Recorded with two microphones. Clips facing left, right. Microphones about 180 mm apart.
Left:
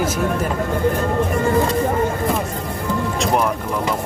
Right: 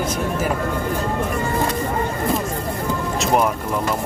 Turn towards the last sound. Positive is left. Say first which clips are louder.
# even
turn(degrees=0)  # may be behind; listen again after turning